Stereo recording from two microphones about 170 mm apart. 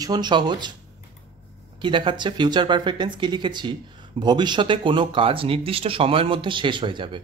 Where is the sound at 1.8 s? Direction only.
30° right (ahead or behind).